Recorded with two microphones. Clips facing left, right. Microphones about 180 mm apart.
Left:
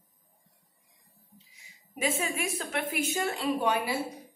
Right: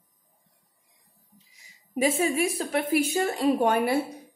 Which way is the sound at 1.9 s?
40° right (ahead or behind).